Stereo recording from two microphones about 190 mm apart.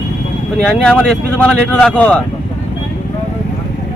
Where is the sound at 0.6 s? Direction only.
5° left (ahead or behind).